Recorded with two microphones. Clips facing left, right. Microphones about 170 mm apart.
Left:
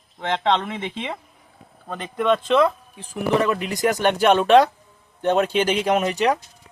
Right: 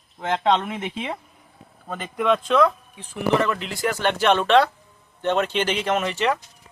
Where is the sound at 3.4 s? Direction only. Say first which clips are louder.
Left 3 dB; 15° left (ahead or behind).